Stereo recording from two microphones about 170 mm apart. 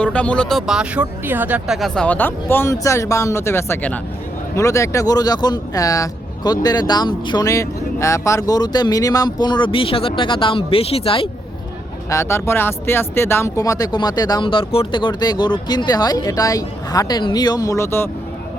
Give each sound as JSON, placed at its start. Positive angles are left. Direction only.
{"t": 0.0, "sound": "speech", "side_deg": 5}
{"t": 12.1, "sound": "speech", "side_deg": 15}